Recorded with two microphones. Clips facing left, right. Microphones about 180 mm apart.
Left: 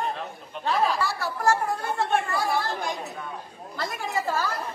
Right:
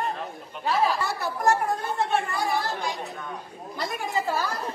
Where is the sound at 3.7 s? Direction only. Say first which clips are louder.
Right 1 dB; 15° right (ahead or behind).